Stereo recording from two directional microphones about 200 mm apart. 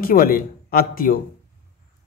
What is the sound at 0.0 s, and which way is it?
A man's voice, 45° left (ahead or behind).